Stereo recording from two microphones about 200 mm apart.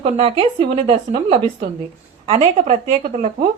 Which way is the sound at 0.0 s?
30° right (ahead or behind).